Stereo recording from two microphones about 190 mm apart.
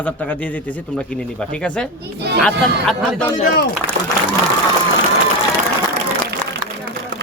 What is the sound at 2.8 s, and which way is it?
Speech, centre (ahead or behind).